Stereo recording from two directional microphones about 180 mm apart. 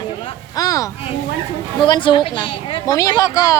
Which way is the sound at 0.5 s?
20° left (ahead or behind).